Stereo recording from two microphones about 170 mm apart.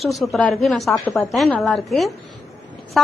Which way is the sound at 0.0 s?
Centre (ahead or behind).